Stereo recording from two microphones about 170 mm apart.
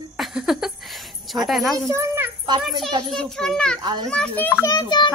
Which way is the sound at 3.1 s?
5° left (ahead or behind).